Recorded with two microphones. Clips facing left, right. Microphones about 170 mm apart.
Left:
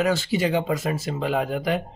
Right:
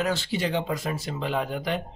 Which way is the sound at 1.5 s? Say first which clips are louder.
Left 4 dB; 5° left (ahead or behind).